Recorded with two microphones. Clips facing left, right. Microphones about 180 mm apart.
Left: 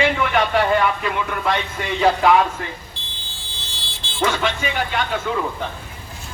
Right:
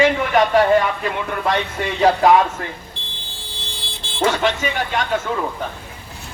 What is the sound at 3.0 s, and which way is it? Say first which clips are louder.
Vehicle: right 3 dB; 60° right (ahead or behind).